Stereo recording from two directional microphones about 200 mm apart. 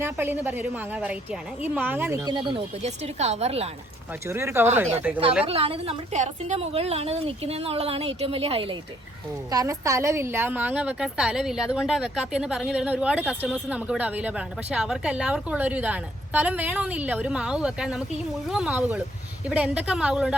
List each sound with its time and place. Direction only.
0.0 s a woman's voice: 10° right (ahead or behind); by 3.7 s 30° right (ahead or behind)
4.3 s a woman's voice: 10° right (ahead or behind)
5.5 s a woman's voice: 30° right (ahead or behind)
9.5 s a woman's voice: 15° right (ahead or behind)